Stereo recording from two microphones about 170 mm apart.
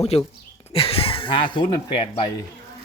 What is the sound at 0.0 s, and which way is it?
Speech, 35° left (ahead or behind).